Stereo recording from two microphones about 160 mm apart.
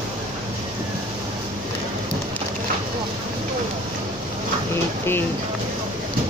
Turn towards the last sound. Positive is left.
turn(degrees=15)  # may be behind; listen again after turning